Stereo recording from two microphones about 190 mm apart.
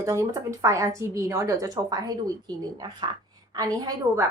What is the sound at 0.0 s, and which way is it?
A woman's voice, 15° right (ahead or behind).